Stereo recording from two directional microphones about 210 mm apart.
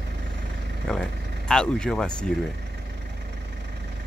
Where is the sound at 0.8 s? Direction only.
5° left (ahead or behind).